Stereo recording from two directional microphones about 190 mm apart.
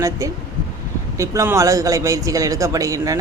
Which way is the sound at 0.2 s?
15° right (ahead or behind).